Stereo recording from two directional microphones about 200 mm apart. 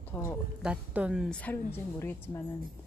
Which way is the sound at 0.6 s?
5° right (ahead or behind).